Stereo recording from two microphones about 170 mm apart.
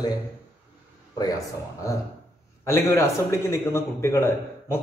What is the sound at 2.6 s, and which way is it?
A man's voice, 15° left (ahead or behind).